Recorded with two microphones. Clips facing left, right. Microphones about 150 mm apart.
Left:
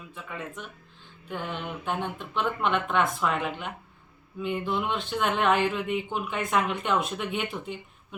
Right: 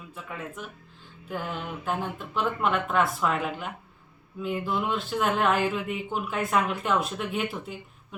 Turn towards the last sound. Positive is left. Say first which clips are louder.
# right 1 dB
turn(degrees=-5)  # may be behind; listen again after turning